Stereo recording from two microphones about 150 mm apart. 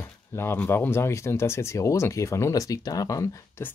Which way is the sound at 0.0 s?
15° left (ahead or behind).